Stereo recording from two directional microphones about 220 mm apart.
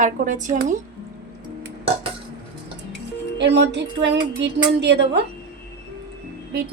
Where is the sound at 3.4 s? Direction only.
50° right (ahead or behind).